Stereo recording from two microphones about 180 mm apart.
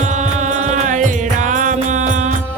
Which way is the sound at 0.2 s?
40° right (ahead or behind).